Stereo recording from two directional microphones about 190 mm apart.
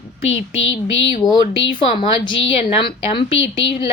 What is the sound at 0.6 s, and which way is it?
Speech, 85° left.